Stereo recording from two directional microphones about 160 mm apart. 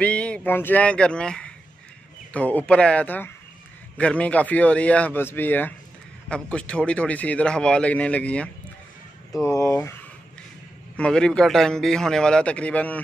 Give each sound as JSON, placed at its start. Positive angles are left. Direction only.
{"t": 0.0, "sound": "speech", "side_deg": 5}
{"t": 9.4, "sound": "speech", "side_deg": 20}
{"t": 11.0, "sound": "a man's voice", "side_deg": 5}